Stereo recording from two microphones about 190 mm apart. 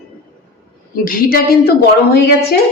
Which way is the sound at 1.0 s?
50° left (ahead or behind).